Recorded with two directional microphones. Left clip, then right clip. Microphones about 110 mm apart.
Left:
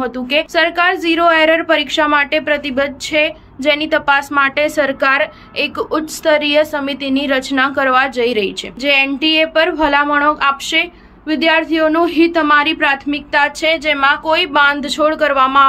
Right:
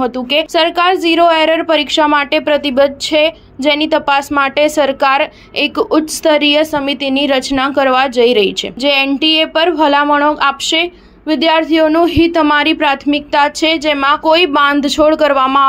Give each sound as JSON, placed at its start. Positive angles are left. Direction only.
{"t": 0.0, "sound": "a woman's voice", "side_deg": -55}